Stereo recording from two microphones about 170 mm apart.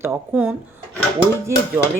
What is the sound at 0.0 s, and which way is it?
Speech, 10° right (ahead or behind).